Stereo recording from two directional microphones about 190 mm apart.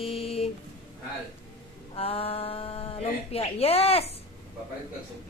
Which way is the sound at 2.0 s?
30° left (ahead or behind).